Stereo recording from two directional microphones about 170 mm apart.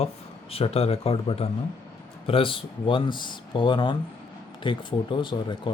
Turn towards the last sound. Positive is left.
turn(degrees=30)  # may be behind; listen again after turning